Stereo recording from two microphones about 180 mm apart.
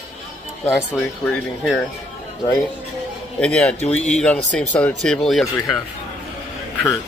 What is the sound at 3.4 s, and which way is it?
Speech, 5° left (ahead or behind).